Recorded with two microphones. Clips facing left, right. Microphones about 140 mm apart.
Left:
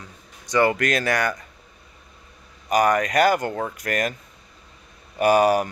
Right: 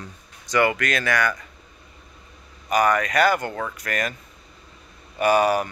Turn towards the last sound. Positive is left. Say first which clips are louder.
# left 2 dB
turn(degrees=45)  # may be behind; listen again after turning